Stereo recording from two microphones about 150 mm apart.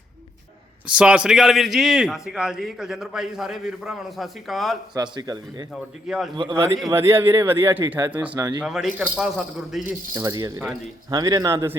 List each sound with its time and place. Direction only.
0.9 s a man's voice: 5° right (ahead or behind)
5.1 s speech: 25° right (ahead or behind)
5.7 s a man's voice: centre (ahead or behind)
6.3 s a man's voice: 35° right (ahead or behind)
6.9 s speech: 15° right (ahead or behind)
7.9 s speech: 25° right (ahead or behind)
8.1 s a man's voice: 10° right (ahead or behind)
10.2 s speech: 25° right (ahead or behind)